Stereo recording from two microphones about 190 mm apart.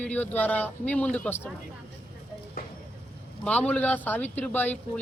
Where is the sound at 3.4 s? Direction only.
5° left (ahead or behind).